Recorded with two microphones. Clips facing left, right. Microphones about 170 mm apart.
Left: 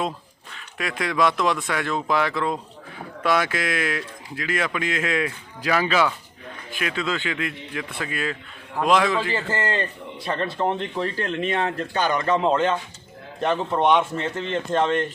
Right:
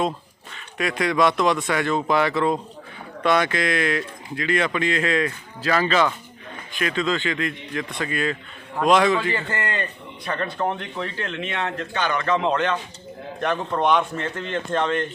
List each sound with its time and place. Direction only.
0.5 s speech: centre (ahead or behind)
9.5 s speech: 30° left (ahead or behind)
13.7 s speech: centre (ahead or behind)